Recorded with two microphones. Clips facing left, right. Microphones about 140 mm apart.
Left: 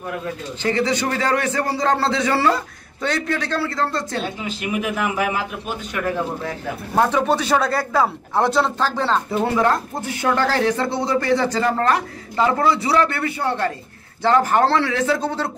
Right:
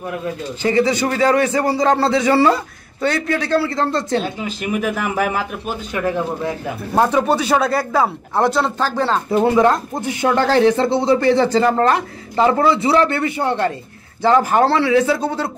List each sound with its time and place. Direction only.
0.1 s speech: 10° right (ahead or behind)
4.2 s speech: 40° right (ahead or behind)
7.0 s speech: 10° right (ahead or behind)
9.6 s speech: 20° right (ahead or behind)